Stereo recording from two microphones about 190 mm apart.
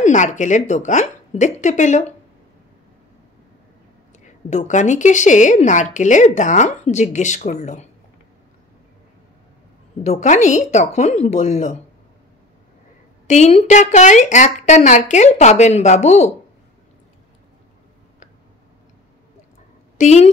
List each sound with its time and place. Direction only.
0.0 s a woman's voice: 40° left (ahead or behind)
4.5 s a woman's voice: 40° left (ahead or behind)
10.0 s a woman's voice: 40° left (ahead or behind)
13.3 s a woman's voice: 35° left (ahead or behind)
20.0 s a woman's voice: 35° left (ahead or behind)